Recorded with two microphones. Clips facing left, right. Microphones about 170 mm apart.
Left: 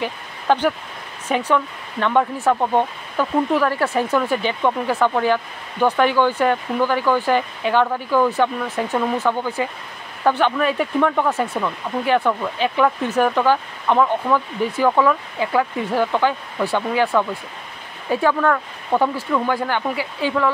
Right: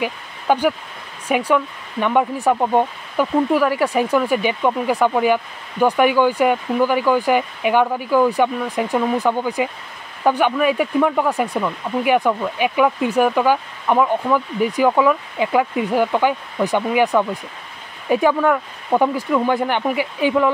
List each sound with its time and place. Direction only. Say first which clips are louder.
0.0 s speech: right 2 dB; 10° right (ahead or behind)